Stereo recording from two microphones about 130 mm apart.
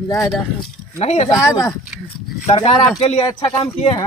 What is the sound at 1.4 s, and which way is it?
Speech, 25° left (ahead or behind).